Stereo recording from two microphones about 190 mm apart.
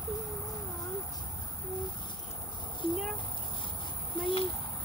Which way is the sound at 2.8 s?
30° left (ahead or behind).